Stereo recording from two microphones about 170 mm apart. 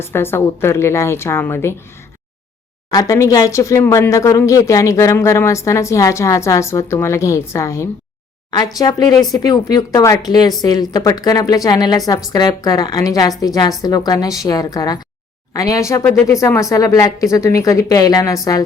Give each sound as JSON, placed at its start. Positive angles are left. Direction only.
{"t": 0.0, "sound": "speech", "side_deg": 15}
{"t": 2.9, "sound": "a woman's voice", "side_deg": 20}